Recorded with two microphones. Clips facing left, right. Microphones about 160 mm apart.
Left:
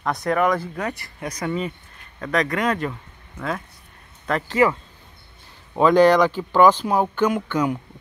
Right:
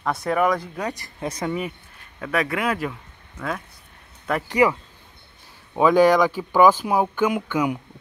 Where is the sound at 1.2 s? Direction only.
25° right (ahead or behind).